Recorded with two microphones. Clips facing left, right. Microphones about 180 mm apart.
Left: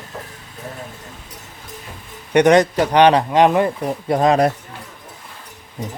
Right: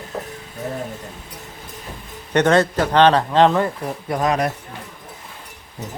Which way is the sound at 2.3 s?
15° left (ahead or behind).